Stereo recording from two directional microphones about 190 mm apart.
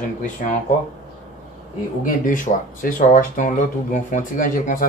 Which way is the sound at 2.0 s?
45° left (ahead or behind).